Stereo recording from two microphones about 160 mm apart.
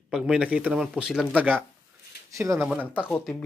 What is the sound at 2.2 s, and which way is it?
Speech, 20° right (ahead or behind).